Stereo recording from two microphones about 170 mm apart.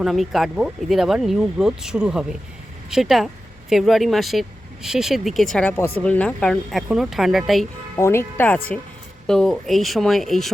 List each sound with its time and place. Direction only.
0.0 s speech: centre (ahead or behind)
7.9 s speech: 15° left (ahead or behind)